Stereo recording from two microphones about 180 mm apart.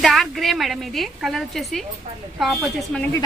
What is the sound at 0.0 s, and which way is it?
A woman's voice, centre (ahead or behind).